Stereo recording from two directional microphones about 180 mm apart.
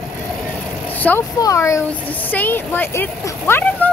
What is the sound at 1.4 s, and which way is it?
Speech, 20° left (ahead or behind).